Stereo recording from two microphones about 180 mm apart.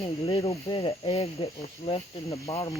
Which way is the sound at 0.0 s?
30° left (ahead or behind).